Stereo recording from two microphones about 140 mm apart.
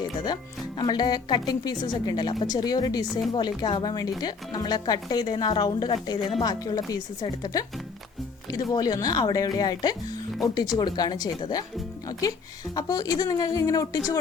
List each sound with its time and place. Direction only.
0.8 s a woman's voice: 30° left (ahead or behind)
8.7 s a woman's voice: 25° left (ahead or behind)
12.7 s a woman's voice: 25° left (ahead or behind)